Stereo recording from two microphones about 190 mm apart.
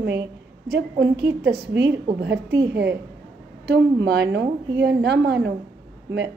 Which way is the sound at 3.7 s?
65° right (ahead or behind).